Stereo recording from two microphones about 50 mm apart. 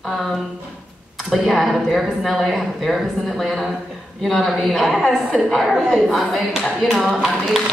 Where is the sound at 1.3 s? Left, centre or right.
Centre.